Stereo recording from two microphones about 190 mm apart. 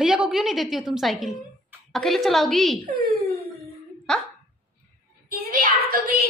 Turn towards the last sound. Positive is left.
turn(degrees=-50)  # may be behind; listen again after turning